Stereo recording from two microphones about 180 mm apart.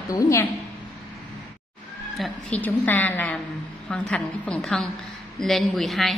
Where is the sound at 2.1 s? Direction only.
5° left (ahead or behind).